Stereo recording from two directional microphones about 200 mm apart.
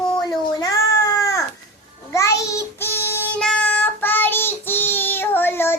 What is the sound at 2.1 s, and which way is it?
Child singing, 15° left (ahead or behind).